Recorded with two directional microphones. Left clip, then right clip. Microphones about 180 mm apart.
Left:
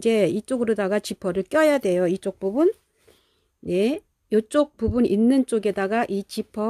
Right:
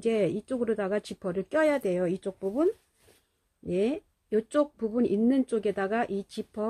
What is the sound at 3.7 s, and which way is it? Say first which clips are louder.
Speech: left 6 dB; 50° left (ahead or behind).